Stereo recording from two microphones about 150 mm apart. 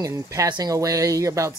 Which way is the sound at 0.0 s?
20° right (ahead or behind).